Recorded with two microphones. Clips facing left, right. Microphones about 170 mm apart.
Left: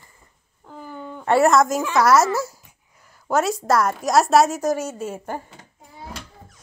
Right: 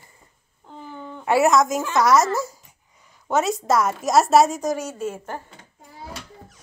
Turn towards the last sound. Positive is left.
turn(degrees=10)  # may be behind; listen again after turning